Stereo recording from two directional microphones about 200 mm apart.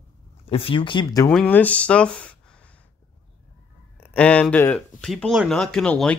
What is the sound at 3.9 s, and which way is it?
Speech, 5° left (ahead or behind).